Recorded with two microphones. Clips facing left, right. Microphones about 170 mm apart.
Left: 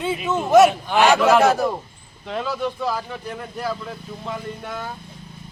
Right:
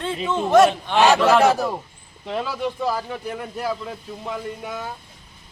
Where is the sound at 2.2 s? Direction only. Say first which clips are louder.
Even; 5° right (ahead or behind).